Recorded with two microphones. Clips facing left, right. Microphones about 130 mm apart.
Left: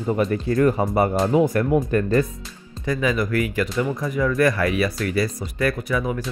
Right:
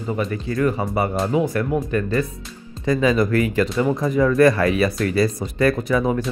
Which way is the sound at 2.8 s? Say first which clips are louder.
Right 4 dB; 20° right (ahead or behind).